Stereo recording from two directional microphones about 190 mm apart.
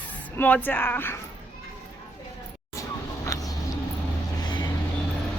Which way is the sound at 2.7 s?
15° left (ahead or behind).